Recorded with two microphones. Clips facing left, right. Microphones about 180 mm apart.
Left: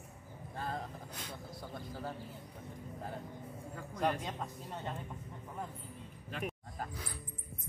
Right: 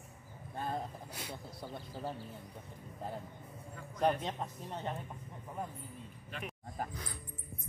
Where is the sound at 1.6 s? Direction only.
20° right (ahead or behind).